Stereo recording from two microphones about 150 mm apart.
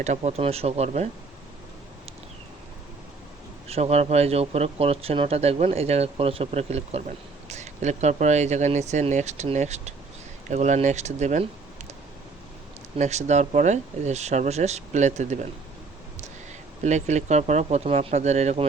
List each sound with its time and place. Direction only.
0.0 s speech: 50° right (ahead or behind)
3.7 s speech: 45° right (ahead or behind)
13.0 s speech: 50° right (ahead or behind)
16.8 s speech: 50° right (ahead or behind)